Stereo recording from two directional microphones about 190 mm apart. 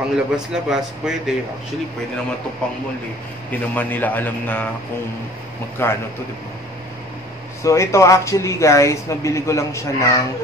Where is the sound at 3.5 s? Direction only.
10° left (ahead or behind).